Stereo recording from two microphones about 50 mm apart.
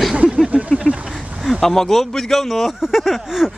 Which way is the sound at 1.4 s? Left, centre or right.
Centre.